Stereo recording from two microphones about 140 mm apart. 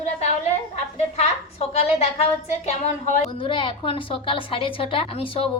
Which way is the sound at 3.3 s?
40° left (ahead or behind).